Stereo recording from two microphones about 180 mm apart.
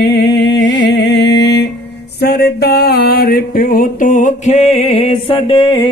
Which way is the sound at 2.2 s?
60° left (ahead or behind).